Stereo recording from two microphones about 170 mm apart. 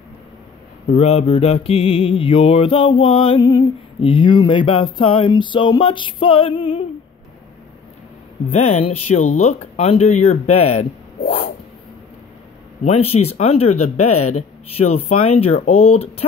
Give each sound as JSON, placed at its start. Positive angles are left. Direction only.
{"t": 0.9, "sound": "mantra", "side_deg": 40}
{"t": 8.5, "sound": "mantra", "side_deg": 40}
{"t": 12.8, "sound": "mantra", "side_deg": 40}